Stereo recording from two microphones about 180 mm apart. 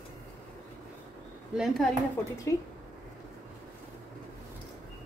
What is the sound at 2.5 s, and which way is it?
Speech, 15° left (ahead or behind).